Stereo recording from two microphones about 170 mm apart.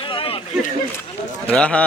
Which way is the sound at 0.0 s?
30° left (ahead or behind).